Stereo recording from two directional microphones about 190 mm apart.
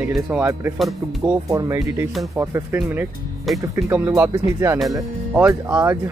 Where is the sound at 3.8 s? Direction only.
10° right (ahead or behind).